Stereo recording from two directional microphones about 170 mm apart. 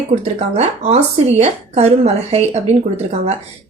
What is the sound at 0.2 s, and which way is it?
A woman's voice, 40° right (ahead or behind).